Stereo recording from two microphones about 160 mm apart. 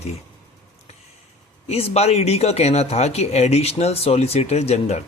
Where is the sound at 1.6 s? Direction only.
40° left (ahead or behind).